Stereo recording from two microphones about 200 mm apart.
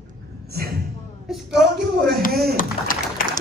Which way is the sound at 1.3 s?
Centre (ahead or behind).